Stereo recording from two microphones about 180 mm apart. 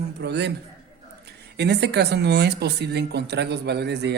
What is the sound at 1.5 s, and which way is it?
Speech, 65° right (ahead or behind).